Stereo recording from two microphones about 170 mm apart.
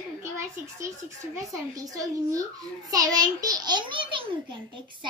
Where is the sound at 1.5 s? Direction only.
20° right (ahead or behind).